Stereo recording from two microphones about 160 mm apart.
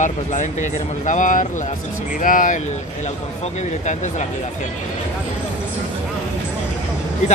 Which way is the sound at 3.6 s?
45° left (ahead or behind).